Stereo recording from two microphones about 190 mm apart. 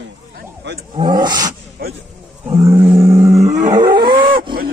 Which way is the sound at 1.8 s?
55° right (ahead or behind).